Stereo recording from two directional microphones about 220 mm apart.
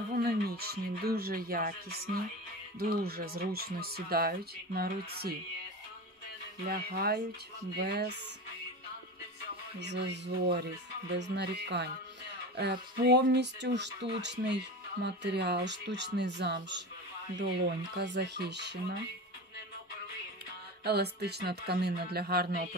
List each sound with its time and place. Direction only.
0.1 s speech: 45° right (ahead or behind)
6.7 s speech: 45° right (ahead or behind)
9.8 s speech: 50° right (ahead or behind)
20.8 s speech: 45° right (ahead or behind)